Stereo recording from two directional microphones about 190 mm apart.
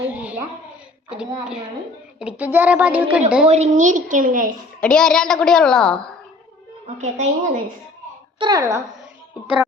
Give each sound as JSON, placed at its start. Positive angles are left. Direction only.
{"t": 0.0, "sound": "a sound", "side_deg": -10}
{"t": 2.1, "sound": "a woman's voice", "side_deg": -5}
{"t": 3.4, "sound": "a woman's voice", "side_deg": -35}
{"t": 4.8, "sound": "a woman's voice", "side_deg": 5}
{"t": 7.0, "sound": "a woman's voice", "side_deg": -35}
{"t": 8.4, "sound": "a woman's voice", "side_deg": -20}